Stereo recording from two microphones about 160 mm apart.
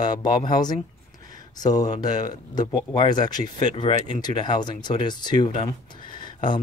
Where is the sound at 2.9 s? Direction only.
30° left (ahead or behind).